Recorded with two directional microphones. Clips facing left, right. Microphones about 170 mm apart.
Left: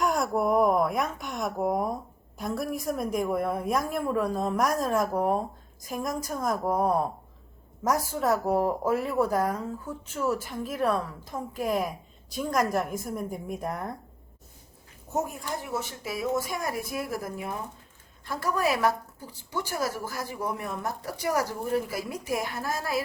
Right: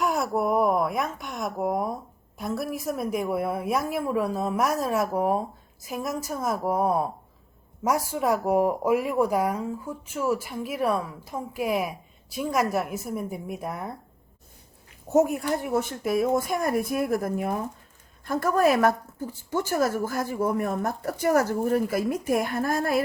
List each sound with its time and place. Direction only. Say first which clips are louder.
0.0 s a sound: right 1 dB; centre (ahead or behind)
2.4 s a woman's voice: right 1 dB; centre (ahead or behind)
15.1 s speech: right 9 dB; 70° right (ahead or behind); by 23.0 s 55° right (ahead or behind)